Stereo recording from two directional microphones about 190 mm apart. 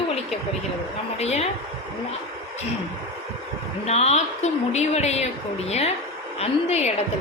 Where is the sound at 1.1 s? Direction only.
35° left (ahead or behind).